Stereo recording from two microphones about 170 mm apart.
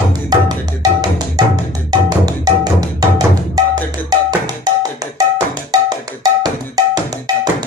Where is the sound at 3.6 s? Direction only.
20° right (ahead or behind).